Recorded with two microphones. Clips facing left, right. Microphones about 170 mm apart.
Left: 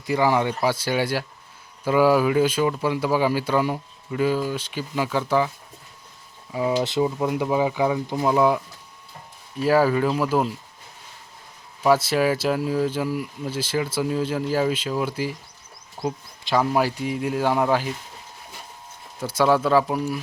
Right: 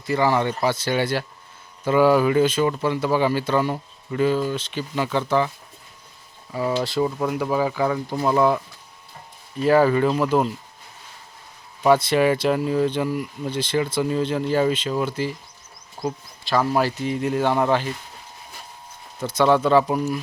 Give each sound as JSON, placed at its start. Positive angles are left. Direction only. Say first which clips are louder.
{"t": 0.0, "sound": "speech", "louder": "even", "side_deg": 10}
{"t": 6.5, "sound": "speech", "louder": "left 1 dB", "side_deg": 15}
{"t": 11.8, "sound": "speech", "louder": "right 2 dB", "side_deg": 5}
{"t": 19.2, "sound": "speech", "louder": "right 1 dB", "side_deg": 10}